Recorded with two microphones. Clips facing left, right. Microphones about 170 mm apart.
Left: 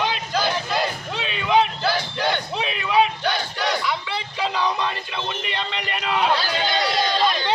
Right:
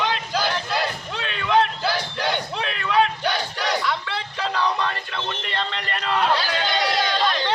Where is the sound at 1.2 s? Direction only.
15° left (ahead or behind).